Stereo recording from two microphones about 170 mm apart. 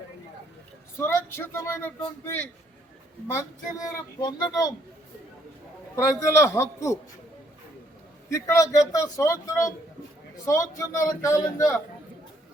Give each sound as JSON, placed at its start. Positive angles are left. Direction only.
{"t": 0.9, "sound": "speech", "side_deg": 15}
{"t": 6.0, "sound": "speech", "side_deg": 15}
{"t": 8.3, "sound": "speech", "side_deg": 20}